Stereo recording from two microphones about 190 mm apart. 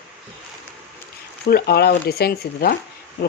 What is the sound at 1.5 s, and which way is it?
Speech, 55° left (ahead or behind).